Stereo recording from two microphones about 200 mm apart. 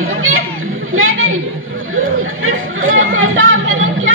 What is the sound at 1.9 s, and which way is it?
Chatter, 85° right.